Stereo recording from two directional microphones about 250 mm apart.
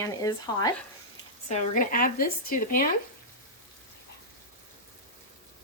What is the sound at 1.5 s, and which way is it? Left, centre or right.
Speech, left.